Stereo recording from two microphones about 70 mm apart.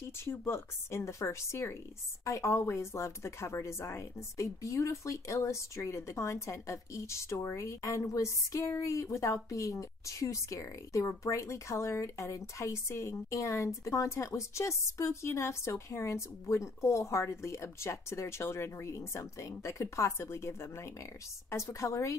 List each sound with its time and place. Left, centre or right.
0.2 s speech: left